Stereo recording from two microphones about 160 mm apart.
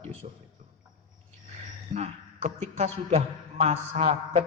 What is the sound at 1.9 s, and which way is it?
A man's voice, 45° right (ahead or behind).